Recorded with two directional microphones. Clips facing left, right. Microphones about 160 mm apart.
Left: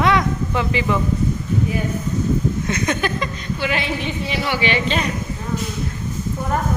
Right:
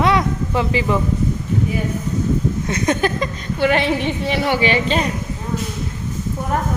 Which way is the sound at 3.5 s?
60° right (ahead or behind).